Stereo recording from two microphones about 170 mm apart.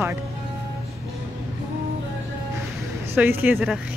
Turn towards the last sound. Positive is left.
turn(degrees=-10)  # may be behind; listen again after turning